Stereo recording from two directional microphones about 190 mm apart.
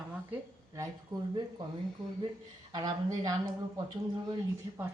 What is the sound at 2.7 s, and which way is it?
Speech, 20° right (ahead or behind).